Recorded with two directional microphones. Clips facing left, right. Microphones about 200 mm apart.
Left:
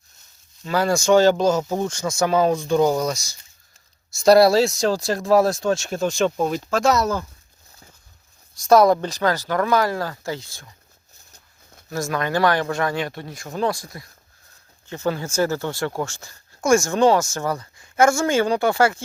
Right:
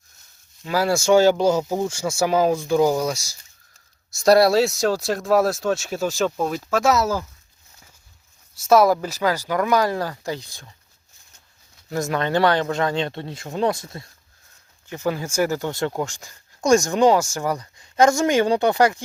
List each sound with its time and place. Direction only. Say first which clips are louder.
0.6 s speech: even; 5° right (ahead or behind)
8.5 s speech: left 1 dB; 5° right (ahead or behind)
11.9 s speech: right 1 dB; 20° right (ahead or behind)
14.8 s speech: even; 15° right (ahead or behind)